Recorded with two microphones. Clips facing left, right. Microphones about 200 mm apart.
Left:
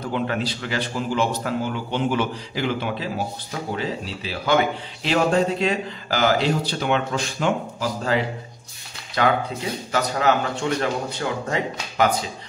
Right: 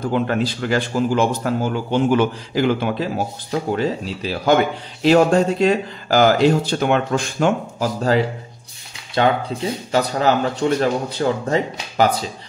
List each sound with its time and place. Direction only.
0.1 s speech: 45° right (ahead or behind)
9.2 s speech: 30° right (ahead or behind)